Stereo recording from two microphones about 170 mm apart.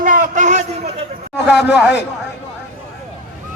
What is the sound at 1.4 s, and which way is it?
Speech, 85° left.